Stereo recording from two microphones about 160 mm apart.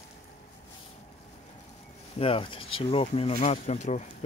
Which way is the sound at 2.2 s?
35° left (ahead or behind).